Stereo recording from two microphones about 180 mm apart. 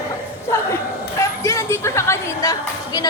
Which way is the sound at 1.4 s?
15° left (ahead or behind).